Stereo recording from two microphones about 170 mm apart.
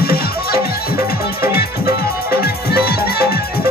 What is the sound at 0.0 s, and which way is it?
Music, 65° left (ahead or behind).